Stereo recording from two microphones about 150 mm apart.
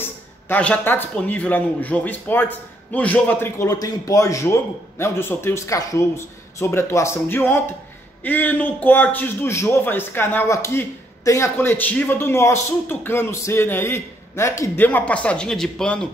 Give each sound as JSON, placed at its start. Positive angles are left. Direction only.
{"t": 0.0, "sound": "a man's voice", "side_deg": 10}